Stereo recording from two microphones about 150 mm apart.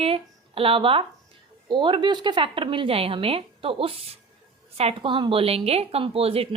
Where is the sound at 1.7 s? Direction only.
35° right (ahead or behind).